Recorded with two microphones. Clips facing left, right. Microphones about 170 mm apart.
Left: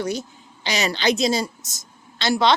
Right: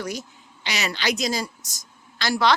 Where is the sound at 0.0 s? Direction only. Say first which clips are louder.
Left 5 dB; 30° left (ahead or behind).